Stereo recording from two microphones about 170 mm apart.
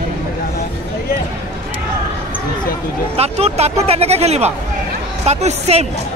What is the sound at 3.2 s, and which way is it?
Speech, 40° right (ahead or behind).